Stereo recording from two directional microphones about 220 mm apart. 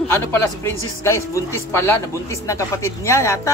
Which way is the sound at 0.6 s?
15° left (ahead or behind).